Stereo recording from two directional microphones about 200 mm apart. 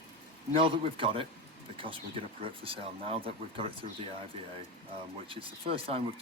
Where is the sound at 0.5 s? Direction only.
25° right (ahead or behind).